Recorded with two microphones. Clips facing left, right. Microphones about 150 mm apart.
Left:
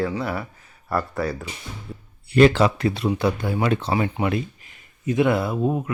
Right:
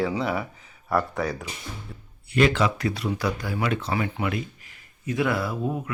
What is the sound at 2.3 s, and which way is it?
Speech, 35° left (ahead or behind).